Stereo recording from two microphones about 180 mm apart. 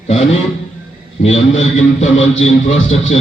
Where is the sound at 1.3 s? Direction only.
40° left (ahead or behind).